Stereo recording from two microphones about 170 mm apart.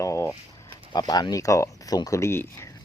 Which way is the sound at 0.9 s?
25° left (ahead or behind).